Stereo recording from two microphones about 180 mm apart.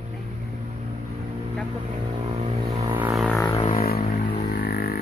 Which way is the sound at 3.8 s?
60° left (ahead or behind).